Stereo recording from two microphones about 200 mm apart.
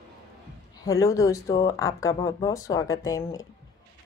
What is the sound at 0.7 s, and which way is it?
A woman's voice, 15° left (ahead or behind).